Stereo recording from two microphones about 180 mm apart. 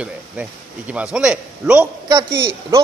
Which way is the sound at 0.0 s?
5° right (ahead or behind).